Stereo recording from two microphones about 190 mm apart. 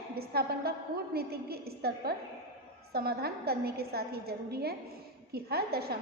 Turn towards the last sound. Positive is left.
turn(degrees=-55)  # may be behind; listen again after turning